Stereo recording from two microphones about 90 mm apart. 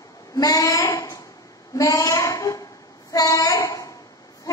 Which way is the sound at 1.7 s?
40° left (ahead or behind).